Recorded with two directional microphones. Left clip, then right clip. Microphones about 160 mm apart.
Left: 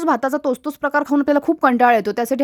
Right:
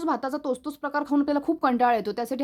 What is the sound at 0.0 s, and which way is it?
Speech, 50° left (ahead or behind).